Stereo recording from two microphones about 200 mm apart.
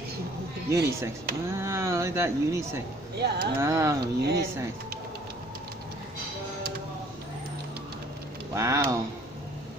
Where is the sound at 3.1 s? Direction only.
55° right (ahead or behind).